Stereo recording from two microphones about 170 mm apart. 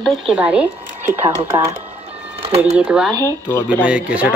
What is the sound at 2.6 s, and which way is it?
Speech, 5° right (ahead or behind).